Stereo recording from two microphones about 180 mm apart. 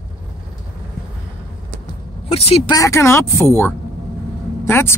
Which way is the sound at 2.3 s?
35° left (ahead or behind).